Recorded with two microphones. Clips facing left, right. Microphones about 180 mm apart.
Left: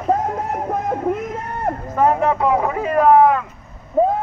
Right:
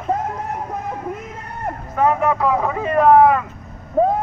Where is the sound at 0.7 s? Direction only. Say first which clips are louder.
Left 6 dB; 60° left (ahead or behind).